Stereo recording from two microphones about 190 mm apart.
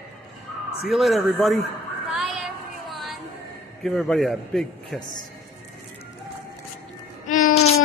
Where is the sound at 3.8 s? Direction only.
Centre (ahead or behind).